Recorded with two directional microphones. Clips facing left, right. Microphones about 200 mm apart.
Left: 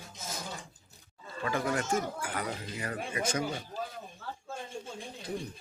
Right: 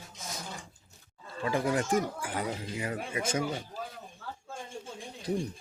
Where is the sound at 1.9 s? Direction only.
15° right (ahead or behind).